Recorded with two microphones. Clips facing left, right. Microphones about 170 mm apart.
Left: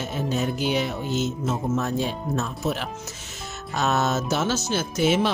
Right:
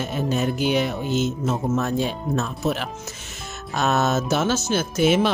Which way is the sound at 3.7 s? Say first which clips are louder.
Right 2 dB; 55° right (ahead or behind).